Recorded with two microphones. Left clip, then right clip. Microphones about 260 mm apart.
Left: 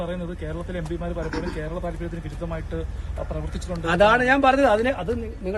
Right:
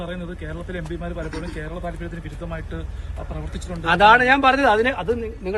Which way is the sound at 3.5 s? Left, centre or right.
Left.